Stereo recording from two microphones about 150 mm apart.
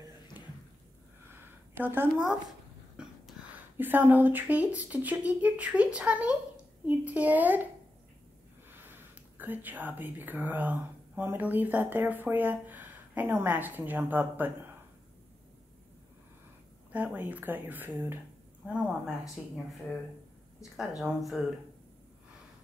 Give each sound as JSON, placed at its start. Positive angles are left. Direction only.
{"t": 1.8, "sound": "speech", "side_deg": -15}
{"t": 3.0, "sound": "a sound", "side_deg": -5}
{"t": 3.7, "sound": "speech", "side_deg": -15}
{"t": 8.6, "sound": "speech", "side_deg": -15}
{"t": 16.9, "sound": "speech", "side_deg": -10}
{"t": 21.0, "sound": "speech", "side_deg": 0}